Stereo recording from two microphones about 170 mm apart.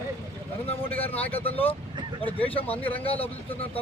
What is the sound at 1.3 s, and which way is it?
Speech, 35° left (ahead or behind).